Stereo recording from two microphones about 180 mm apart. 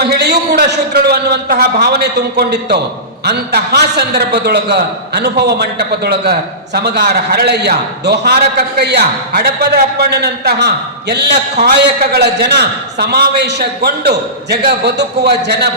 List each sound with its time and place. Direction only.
0.0 s a man's voice: 65° right (ahead or behind)